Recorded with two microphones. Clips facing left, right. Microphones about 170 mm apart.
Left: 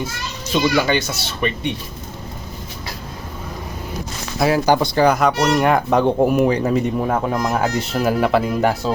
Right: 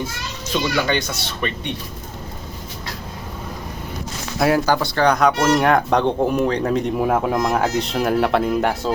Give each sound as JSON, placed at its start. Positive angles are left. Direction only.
{"t": 0.9, "sound": "speech", "side_deg": 5}
{"t": 4.4, "sound": "speech", "side_deg": 0}
{"t": 4.6, "sound": "speech", "side_deg": 15}
{"t": 5.0, "sound": "speech", "side_deg": 5}